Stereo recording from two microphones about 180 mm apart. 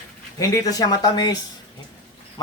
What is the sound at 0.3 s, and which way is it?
Speech, 20° left (ahead or behind).